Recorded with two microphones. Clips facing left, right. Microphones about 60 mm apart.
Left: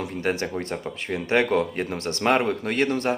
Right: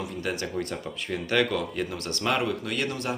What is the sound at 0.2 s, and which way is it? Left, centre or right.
Speech, left.